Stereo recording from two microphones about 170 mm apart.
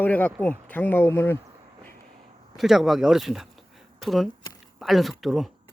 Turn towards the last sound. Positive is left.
turn(degrees=0)  # may be behind; listen again after turning